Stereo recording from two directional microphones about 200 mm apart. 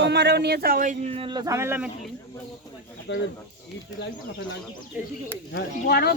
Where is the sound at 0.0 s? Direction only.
60° right (ahead or behind); by 1.9 s 10° right (ahead or behind).